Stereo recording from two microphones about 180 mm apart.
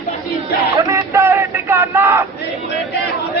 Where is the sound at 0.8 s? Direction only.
15° right (ahead or behind).